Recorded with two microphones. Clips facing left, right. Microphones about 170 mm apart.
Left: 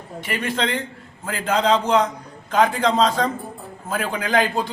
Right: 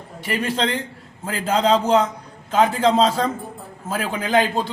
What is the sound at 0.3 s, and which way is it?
A man's voice, 30° right (ahead or behind).